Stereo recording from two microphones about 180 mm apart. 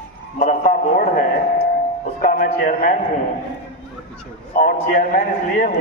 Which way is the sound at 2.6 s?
45° left (ahead or behind).